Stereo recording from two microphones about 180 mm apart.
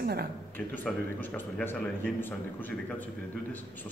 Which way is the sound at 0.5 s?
10° left (ahead or behind).